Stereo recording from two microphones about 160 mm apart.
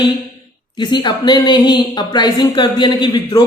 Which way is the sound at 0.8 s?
30° left (ahead or behind).